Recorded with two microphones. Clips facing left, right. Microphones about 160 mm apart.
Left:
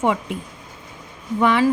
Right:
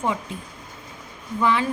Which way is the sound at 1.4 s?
70° left (ahead or behind).